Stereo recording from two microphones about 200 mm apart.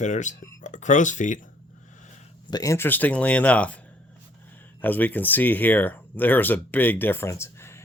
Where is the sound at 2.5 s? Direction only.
15° left (ahead or behind).